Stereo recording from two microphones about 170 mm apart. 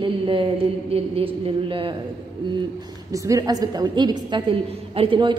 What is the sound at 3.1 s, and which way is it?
A woman's voice, 20° right (ahead or behind).